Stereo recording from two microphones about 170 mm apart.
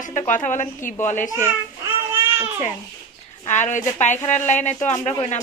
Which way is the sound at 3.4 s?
45° left (ahead or behind).